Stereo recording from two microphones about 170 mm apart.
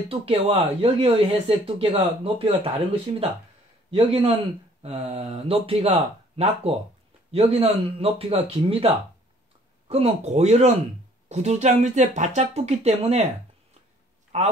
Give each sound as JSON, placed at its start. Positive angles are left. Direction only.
{"t": 0.1, "sound": "speech", "side_deg": -35}
{"t": 14.3, "sound": "speech", "side_deg": -40}